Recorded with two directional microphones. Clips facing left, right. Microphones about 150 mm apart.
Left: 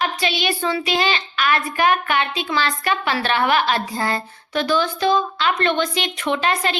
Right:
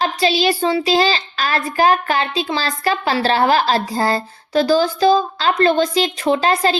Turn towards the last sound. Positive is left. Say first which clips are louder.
# right 5 dB
turn(degrees=-35)  # may be behind; listen again after turning